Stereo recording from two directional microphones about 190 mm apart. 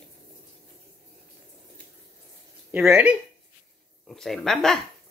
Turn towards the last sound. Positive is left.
turn(degrees=0)  # may be behind; listen again after turning